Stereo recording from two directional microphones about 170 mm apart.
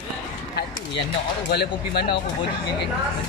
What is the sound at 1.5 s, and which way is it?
Speech, 70° left (ahead or behind).